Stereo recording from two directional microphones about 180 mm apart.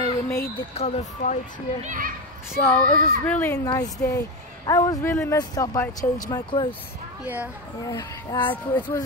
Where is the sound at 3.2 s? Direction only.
10° left (ahead or behind).